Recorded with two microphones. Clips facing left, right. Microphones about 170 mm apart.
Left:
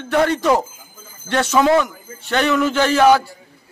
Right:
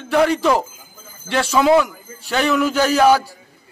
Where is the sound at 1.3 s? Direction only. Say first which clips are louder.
Even; 5° right (ahead or behind).